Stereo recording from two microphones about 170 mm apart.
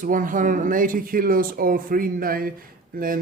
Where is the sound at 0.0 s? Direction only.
55° right (ahead or behind).